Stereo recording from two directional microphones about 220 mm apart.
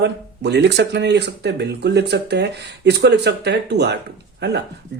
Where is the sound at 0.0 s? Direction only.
50° right (ahead or behind).